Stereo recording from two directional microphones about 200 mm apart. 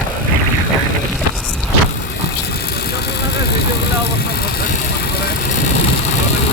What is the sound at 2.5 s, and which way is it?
Vehicle, 50° left (ahead or behind).